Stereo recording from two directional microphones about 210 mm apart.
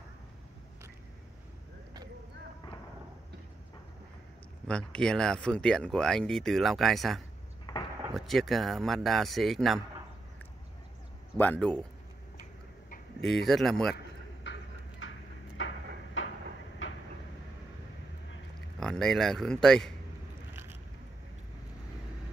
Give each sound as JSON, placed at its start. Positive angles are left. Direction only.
{"t": 4.6, "sound": "speech", "side_deg": 5}
{"t": 7.7, "sound": "a sound", "side_deg": 20}
{"t": 8.1, "sound": "speech", "side_deg": 0}
{"t": 11.3, "sound": "speech", "side_deg": 10}
{"t": 13.5, "sound": "speech", "side_deg": 0}
{"t": 14.4, "sound": "a sound", "side_deg": 60}
{"t": 18.8, "sound": "speech", "side_deg": 5}